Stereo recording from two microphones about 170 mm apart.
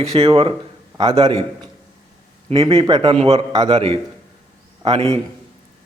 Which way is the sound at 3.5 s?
25° right (ahead or behind).